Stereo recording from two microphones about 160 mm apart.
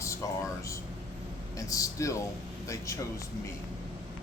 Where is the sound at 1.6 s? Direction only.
20° left (ahead or behind).